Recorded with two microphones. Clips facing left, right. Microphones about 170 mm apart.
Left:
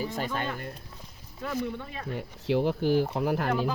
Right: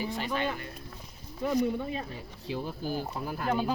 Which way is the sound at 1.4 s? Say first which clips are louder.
Right 4 dB; 20° right (ahead or behind).